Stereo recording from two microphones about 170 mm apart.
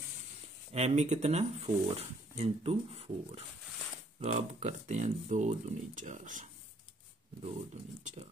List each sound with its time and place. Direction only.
0.7 s speech: 40° right (ahead or behind)
8.0 s speech: 50° right (ahead or behind)